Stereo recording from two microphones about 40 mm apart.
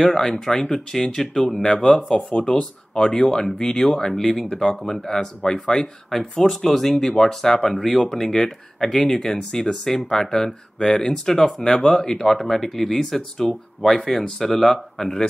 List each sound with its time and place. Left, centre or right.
0.0 s speech: centre
0.3 s speech: centre